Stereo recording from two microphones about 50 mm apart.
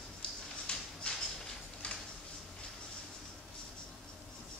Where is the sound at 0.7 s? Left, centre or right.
Left.